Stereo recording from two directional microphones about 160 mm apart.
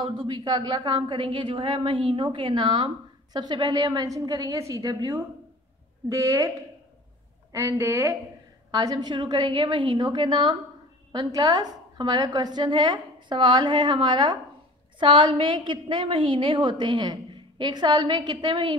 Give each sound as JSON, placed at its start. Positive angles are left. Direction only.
{"t": 0.0, "sound": "a woman's voice", "side_deg": -30}
{"t": 7.5, "sound": "a woman's voice", "side_deg": -20}